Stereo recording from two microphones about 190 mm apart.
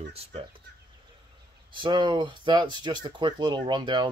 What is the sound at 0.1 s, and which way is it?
Speech, 30° right (ahead or behind).